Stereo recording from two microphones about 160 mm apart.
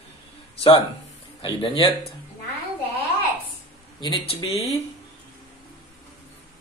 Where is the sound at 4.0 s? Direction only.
25° left (ahead or behind).